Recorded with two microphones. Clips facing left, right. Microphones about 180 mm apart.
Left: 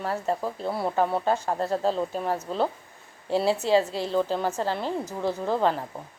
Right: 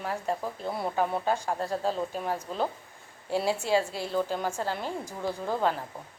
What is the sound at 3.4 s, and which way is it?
Speech, 10° right (ahead or behind).